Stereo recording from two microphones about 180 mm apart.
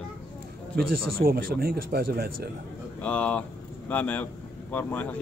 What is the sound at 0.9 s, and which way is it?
Speech, 55° right (ahead or behind).